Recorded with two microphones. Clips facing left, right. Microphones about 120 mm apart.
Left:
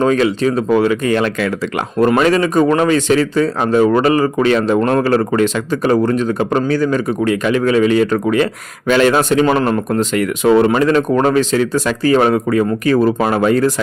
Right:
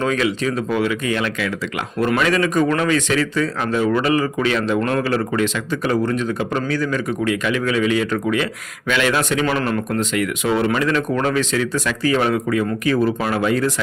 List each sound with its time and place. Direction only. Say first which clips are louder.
0.0 s speech: left 6 dB; 35° left (ahead or behind)